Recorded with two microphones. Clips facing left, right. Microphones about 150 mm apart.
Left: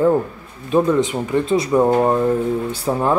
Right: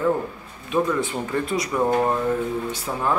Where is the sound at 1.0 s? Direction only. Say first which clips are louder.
Left 6 dB; 20° left (ahead or behind).